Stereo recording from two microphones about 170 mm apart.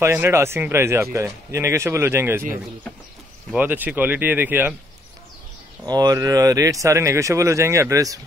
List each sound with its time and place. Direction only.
0.0 s speech: 15° right (ahead or behind)
3.5 s speech: 10° right (ahead or behind)
5.9 s speech: 20° right (ahead or behind)